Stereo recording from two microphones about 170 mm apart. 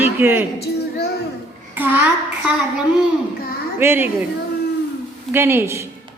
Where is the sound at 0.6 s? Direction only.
70° left (ahead or behind).